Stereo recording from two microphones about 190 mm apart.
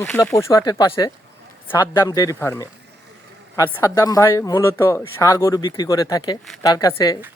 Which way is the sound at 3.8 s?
15° left (ahead or behind).